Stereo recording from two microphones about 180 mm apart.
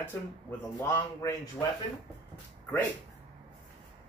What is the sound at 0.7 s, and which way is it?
Speech, 15° left (ahead or behind).